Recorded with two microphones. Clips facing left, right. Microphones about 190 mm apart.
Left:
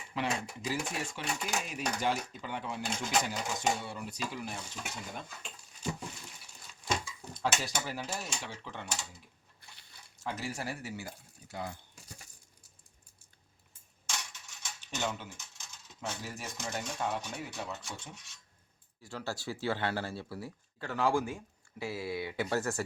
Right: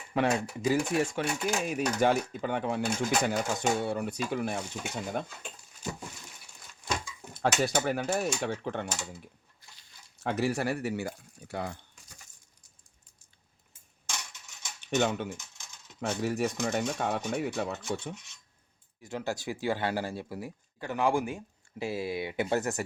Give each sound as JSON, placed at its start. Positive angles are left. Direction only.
{"t": 0.1, "sound": "speech", "side_deg": -55}
{"t": 7.4, "sound": "speech", "side_deg": -60}
{"t": 9.6, "sound": "a sound", "side_deg": 65}
{"t": 10.2, "sound": "speech", "side_deg": -65}
{"t": 14.8, "sound": "speech", "side_deg": -60}
{"t": 19.0, "sound": "speech", "side_deg": -20}